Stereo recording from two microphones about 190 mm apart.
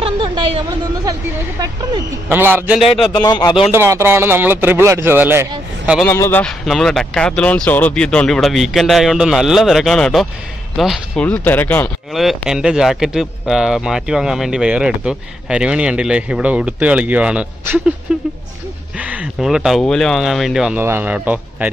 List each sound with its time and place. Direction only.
0.0 s a sound: 30° right (ahead or behind)
2.2 s a man's voice: 10° right (ahead or behind)
3.2 s speech: 20° left (ahead or behind)
3.7 s a man's voice: 15° right (ahead or behind)
6.0 s speech: 15° left (ahead or behind); by 17.9 s 10° right (ahead or behind)
18.9 s speech: 5° right (ahead or behind)